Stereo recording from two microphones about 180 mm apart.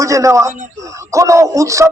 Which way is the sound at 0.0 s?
15° right (ahead or behind).